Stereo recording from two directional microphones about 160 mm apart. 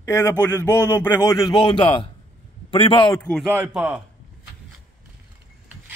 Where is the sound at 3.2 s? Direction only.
5° left (ahead or behind).